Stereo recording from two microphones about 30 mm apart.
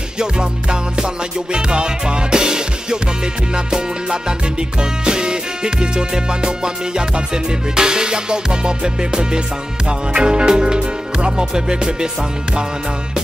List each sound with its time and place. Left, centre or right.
0.2 s music: right